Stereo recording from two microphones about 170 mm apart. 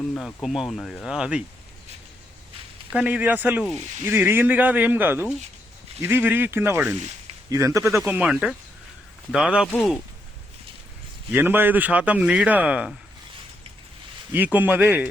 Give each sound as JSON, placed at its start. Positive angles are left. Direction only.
{"t": 0.1, "sound": "speech", "side_deg": 5}
{"t": 2.9, "sound": "a man's voice", "side_deg": -10}
{"t": 7.9, "sound": "speech", "side_deg": -5}
{"t": 11.3, "sound": "a man's voice", "side_deg": -10}
{"t": 14.3, "sound": "a man's voice", "side_deg": -10}